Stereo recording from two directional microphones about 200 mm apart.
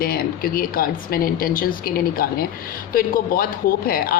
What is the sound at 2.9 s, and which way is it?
A woman's voice, 45° left (ahead or behind).